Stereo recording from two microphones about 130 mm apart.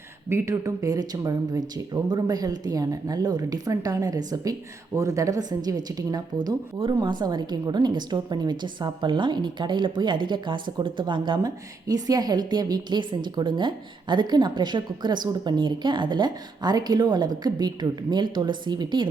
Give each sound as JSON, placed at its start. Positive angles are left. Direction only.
{"t": 0.3, "sound": "a woman's voice", "side_deg": -20}